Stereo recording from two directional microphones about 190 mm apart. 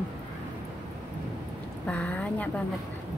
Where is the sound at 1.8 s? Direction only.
5° left (ahead or behind).